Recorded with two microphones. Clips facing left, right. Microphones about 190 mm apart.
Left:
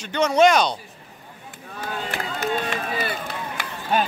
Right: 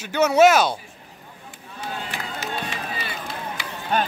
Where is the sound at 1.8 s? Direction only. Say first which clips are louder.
Left 3 dB; 55° left (ahead or behind).